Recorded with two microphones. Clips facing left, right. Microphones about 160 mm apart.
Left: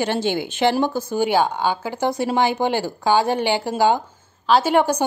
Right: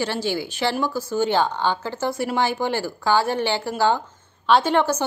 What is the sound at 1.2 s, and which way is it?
Speech, 10° left (ahead or behind).